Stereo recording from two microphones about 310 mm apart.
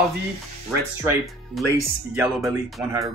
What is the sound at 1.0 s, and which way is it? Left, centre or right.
Speech, centre.